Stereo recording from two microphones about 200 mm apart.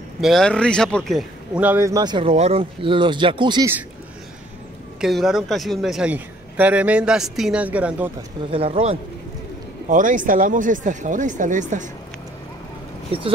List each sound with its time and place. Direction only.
0.2 s speech: centre (ahead or behind); by 3.7 s 20° right (ahead or behind)
5.0 s a man's voice: centre (ahead or behind)
8.5 s speech: 30° right (ahead or behind)
9.8 s speech: 40° right (ahead or behind)